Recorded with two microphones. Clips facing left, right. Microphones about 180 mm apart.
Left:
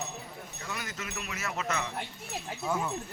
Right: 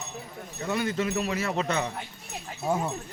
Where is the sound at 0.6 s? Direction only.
30° right (ahead or behind).